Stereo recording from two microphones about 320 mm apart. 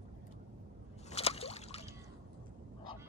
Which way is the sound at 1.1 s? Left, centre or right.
Centre.